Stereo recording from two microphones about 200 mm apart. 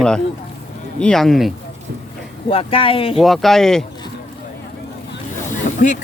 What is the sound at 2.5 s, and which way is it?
Speech, 25° left (ahead or behind).